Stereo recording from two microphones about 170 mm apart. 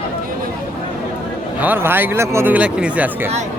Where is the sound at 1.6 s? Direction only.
10° right (ahead or behind).